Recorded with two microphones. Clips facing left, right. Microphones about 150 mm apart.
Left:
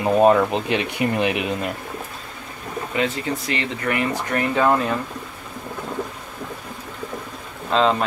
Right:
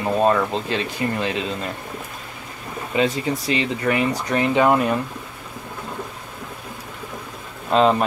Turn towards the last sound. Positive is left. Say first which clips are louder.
# right 2 dB
turn(degrees=-15)  # may be behind; listen again after turning